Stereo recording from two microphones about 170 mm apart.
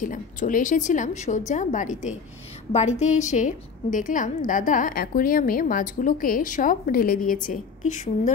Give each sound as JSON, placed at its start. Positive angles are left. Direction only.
{"t": 0.0, "sound": "a woman's voice", "side_deg": 50}